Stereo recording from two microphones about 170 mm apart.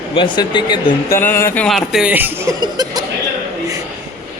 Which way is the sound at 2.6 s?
25° right (ahead or behind).